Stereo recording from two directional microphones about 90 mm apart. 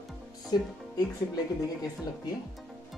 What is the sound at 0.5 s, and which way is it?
Speech, 45° left (ahead or behind).